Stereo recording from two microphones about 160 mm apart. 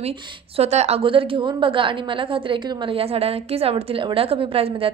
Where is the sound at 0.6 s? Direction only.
40° right (ahead or behind).